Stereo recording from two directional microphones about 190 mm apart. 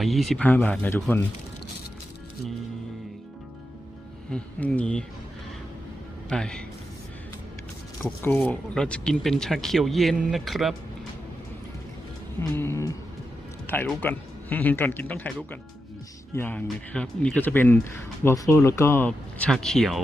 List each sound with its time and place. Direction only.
0.0 s speech: centre (ahead or behind)
4.3 s speech: 5° left (ahead or behind)
6.2 s a man's voice: 5° left (ahead or behind)
8.2 s speech: 10° left (ahead or behind)
12.4 s speech: 15° left (ahead or behind)